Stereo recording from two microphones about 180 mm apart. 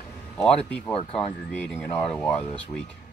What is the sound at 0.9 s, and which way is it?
Speech, 30° left (ahead or behind).